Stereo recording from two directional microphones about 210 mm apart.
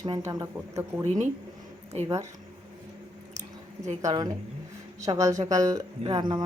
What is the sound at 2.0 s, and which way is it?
Speech, 15° right (ahead or behind).